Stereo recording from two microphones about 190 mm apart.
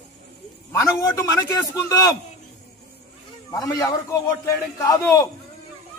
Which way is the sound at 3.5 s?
20° left (ahead or behind).